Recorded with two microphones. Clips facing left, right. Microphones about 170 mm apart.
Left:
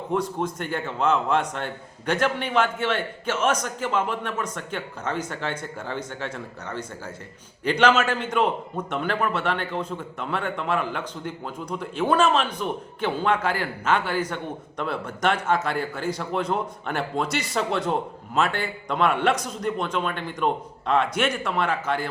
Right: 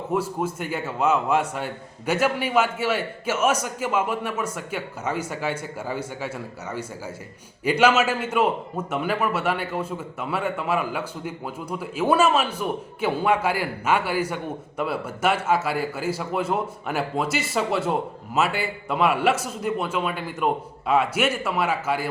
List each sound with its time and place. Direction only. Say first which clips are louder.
0.1 s a man's voice: even; 5° right (ahead or behind)